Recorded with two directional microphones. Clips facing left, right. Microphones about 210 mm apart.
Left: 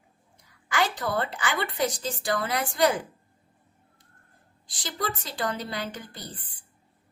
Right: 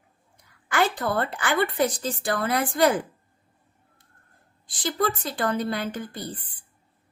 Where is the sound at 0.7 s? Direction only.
55° right (ahead or behind).